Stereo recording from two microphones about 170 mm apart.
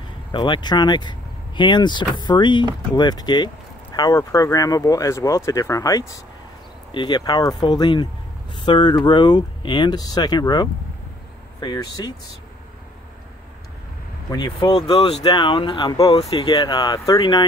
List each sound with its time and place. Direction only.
0.3 s speech: 25° left (ahead or behind)
14.3 s speech: 25° left (ahead or behind)